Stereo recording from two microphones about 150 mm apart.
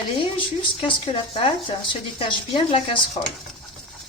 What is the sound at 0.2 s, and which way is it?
Speech, 35° left (ahead or behind).